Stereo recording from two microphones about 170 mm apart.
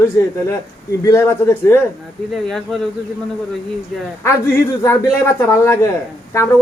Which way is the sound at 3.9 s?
Centre (ahead or behind).